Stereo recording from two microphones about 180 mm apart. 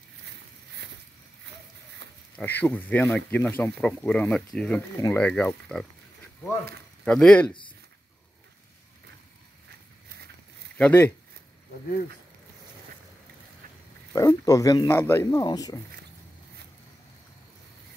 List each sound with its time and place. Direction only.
2.0 s insect: 70° right (ahead or behind)
2.3 s speech: 10° left (ahead or behind)
7.1 s speech: 5° left (ahead or behind)
10.8 s speech: 10° left (ahead or behind)
14.1 s speech: 20° left (ahead or behind)